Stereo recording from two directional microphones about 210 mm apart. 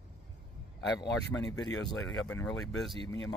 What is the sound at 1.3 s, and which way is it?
Speech, 15° left (ahead or behind).